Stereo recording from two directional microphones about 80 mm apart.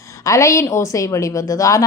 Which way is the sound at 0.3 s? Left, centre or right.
Left.